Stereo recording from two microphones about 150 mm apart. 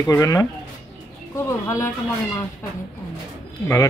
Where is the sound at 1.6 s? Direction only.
20° left (ahead or behind).